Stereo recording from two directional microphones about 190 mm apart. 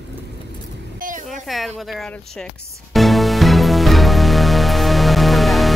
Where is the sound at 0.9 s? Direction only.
45° right (ahead or behind).